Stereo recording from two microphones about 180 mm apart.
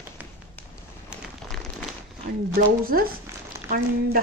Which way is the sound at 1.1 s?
Centre (ahead or behind).